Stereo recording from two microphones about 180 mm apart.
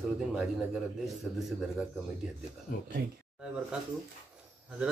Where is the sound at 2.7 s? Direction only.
50° left (ahead or behind).